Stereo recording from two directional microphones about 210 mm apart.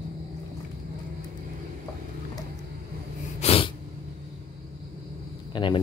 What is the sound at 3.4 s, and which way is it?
Snort, 25° left (ahead or behind).